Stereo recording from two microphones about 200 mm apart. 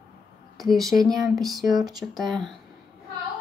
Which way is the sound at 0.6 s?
Centre (ahead or behind).